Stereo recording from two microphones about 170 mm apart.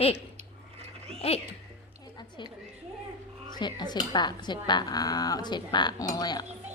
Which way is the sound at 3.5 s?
25° left (ahead or behind).